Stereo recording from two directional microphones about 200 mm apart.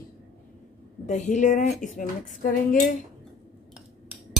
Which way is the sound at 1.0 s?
35° left (ahead or behind).